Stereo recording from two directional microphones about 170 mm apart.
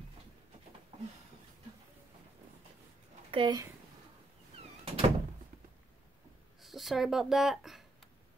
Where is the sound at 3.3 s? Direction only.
25° right (ahead or behind).